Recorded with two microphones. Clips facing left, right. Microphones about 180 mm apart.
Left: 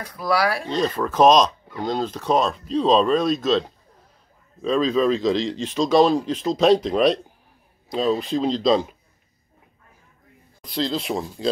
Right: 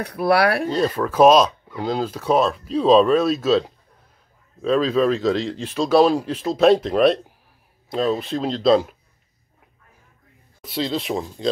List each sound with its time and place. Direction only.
0.0 s speech: 65° right (ahead or behind)
0.7 s speech: 5° right (ahead or behind)
10.6 s speech: 5° right (ahead or behind)